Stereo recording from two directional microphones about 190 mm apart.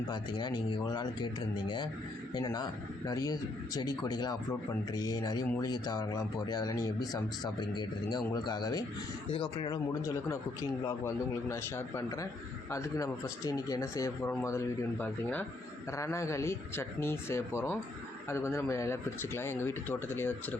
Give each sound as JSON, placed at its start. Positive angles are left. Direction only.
{"t": 0.1, "sound": "speech", "side_deg": 25}